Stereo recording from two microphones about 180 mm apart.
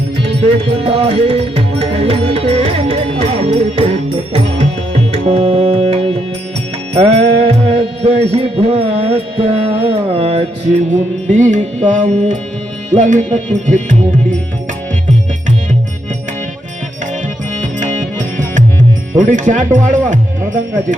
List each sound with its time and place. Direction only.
0.8 s music: 35° right (ahead or behind)
5.1 s music: 35° right (ahead or behind)
17.7 s music: 45° right (ahead or behind)
19.1 s speech: 45° right (ahead or behind)